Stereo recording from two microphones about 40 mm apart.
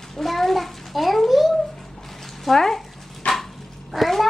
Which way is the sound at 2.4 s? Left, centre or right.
Centre.